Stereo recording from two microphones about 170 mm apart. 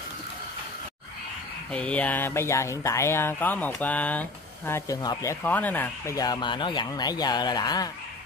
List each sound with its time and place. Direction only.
1.7 s speech: 5° left (ahead or behind); by 7.9 s 25° left (ahead or behind)